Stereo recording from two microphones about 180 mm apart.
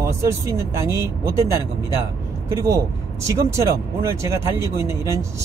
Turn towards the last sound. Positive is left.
turn(degrees=-15)  # may be behind; listen again after turning